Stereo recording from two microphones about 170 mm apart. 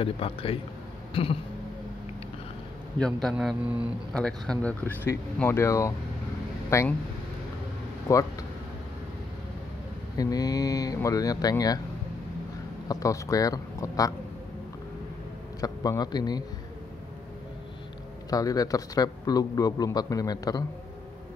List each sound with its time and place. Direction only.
0.0 s a man's voice: 35° left (ahead or behind)
3.0 s a man's voice: centre (ahead or behind)
8.1 s a man's voice: 20° left (ahead or behind)
10.1 s a man's voice: 20° left (ahead or behind)
12.8 s a man's voice: 20° left (ahead or behind)
15.6 s a man's voice: 20° left (ahead or behind)
18.3 s a man's voice: 20° left (ahead or behind)